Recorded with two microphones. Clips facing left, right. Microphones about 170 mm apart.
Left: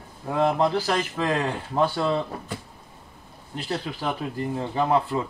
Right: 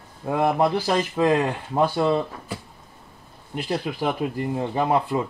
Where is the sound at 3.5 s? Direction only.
15° right (ahead or behind).